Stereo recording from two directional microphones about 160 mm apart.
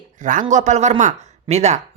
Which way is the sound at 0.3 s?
50° right (ahead or behind).